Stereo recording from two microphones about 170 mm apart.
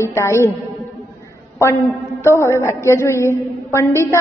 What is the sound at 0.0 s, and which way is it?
Speech, 15° left (ahead or behind).